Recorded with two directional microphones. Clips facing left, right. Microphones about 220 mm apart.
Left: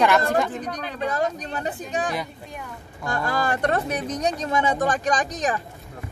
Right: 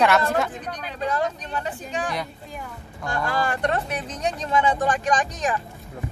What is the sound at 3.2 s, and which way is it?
Speech, 40° left (ahead or behind).